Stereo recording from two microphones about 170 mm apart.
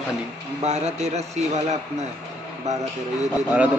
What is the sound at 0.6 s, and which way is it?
A man's voice, 40° right (ahead or behind).